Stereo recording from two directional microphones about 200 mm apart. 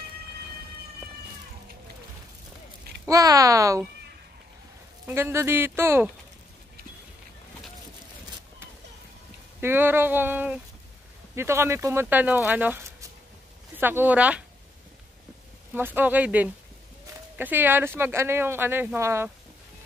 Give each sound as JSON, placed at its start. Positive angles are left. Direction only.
{"t": 3.1, "sound": "speech", "side_deg": -15}
{"t": 5.0, "sound": "speech", "side_deg": -10}
{"t": 9.6, "sound": "speech", "side_deg": -10}
{"t": 15.7, "sound": "speech", "side_deg": -10}